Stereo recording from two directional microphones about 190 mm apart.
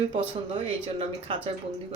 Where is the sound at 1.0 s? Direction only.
30° right (ahead or behind).